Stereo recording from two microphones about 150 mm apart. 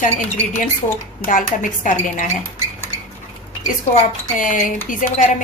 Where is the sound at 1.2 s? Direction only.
60° left (ahead or behind).